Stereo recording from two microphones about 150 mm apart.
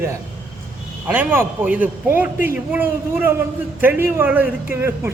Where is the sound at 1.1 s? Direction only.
10° right (ahead or behind).